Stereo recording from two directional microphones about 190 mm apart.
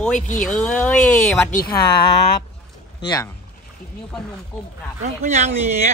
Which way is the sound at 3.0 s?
20° left (ahead or behind).